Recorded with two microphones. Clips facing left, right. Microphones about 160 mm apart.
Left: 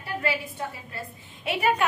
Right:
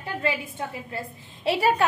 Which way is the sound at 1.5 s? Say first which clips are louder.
Right 3 dB; 35° right (ahead or behind).